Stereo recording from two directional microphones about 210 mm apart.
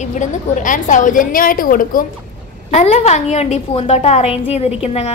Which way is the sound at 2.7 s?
30° left (ahead or behind).